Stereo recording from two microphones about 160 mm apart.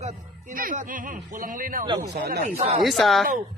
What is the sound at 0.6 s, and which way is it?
Speech, 60° right (ahead or behind).